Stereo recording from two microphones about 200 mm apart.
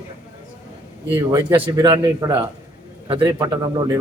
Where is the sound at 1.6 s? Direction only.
15° right (ahead or behind).